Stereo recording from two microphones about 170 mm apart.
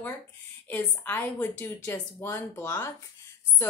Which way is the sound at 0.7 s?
10° left (ahead or behind).